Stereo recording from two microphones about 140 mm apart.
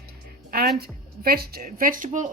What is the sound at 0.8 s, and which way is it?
Speech, 90° right.